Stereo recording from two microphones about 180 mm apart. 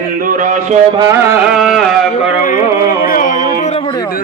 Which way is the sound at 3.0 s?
50° left (ahead or behind).